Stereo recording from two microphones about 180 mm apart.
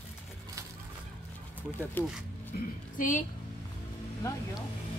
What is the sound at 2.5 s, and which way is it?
Speech, 60° left (ahead or behind).